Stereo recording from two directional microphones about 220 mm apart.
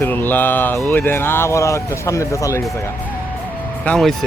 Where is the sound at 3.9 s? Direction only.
Centre (ahead or behind).